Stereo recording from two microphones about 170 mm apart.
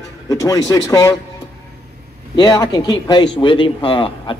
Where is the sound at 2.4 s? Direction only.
25° left (ahead or behind).